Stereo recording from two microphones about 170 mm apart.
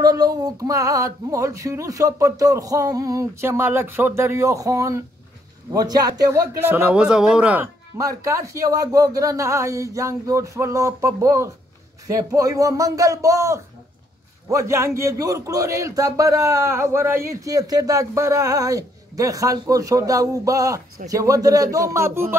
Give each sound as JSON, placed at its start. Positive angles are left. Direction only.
{"t": 0.0, "sound": "a man's voice", "side_deg": -20}